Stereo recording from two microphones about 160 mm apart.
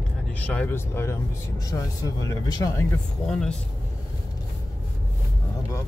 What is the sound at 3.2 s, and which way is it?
Speech, 5° left (ahead or behind).